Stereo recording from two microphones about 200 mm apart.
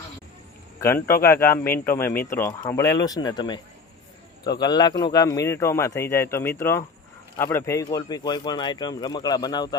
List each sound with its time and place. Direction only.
0.8 s speech: 15° left (ahead or behind)
4.6 s speech: 20° left (ahead or behind)